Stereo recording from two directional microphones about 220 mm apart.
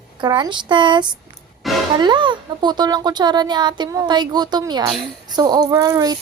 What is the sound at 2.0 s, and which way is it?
Speech, 20° right (ahead or behind).